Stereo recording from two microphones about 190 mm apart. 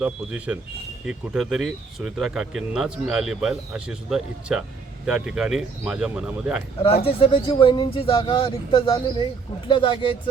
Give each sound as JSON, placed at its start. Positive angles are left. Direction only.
{"t": 0.0, "sound": "speech", "side_deg": -5}
{"t": 6.8, "sound": "speech", "side_deg": 30}